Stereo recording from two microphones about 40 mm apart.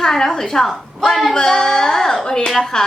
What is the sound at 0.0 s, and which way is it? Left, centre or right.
A woman's voice, centre.